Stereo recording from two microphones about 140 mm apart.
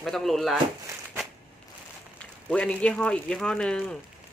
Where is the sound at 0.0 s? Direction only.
Centre (ahead or behind).